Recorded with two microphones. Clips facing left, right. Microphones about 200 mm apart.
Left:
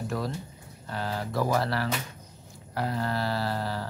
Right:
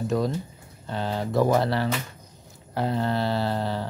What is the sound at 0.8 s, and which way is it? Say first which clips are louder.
Speech: right 4 dB; 25° right (ahead or behind).